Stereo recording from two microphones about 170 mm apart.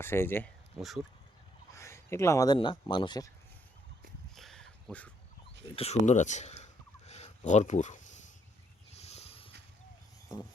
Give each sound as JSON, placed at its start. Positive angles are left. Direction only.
{"t": 0.0, "sound": "speech", "side_deg": 15}
{"t": 0.8, "sound": "speech", "side_deg": 0}
{"t": 1.7, "sound": "speech", "side_deg": 15}
{"t": 4.4, "sound": "a sound", "side_deg": 0}
{"t": 5.6, "sound": "speech", "side_deg": 35}
{"t": 6.6, "sound": "a sound", "side_deg": 40}
{"t": 9.0, "sound": "vehicle", "side_deg": 40}